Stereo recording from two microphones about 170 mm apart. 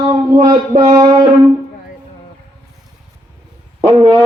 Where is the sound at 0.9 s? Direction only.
25° right (ahead or behind).